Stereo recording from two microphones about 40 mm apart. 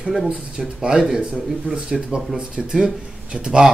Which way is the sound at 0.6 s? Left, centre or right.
Centre.